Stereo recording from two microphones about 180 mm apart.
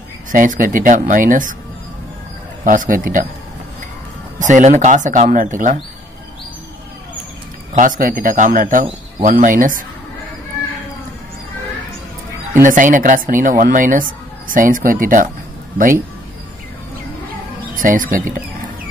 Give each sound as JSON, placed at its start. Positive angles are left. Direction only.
{"t": 0.3, "sound": "speech", "side_deg": -45}
{"t": 2.6, "sound": "speech", "side_deg": -50}
{"t": 4.4, "sound": "speech", "side_deg": -45}
{"t": 7.7, "sound": "speech", "side_deg": -45}
{"t": 12.6, "sound": "speech", "side_deg": -45}
{"t": 17.7, "sound": "speech", "side_deg": -45}